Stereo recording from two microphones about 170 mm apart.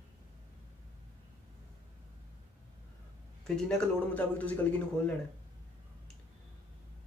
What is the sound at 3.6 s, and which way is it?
Speech, 5° left (ahead or behind).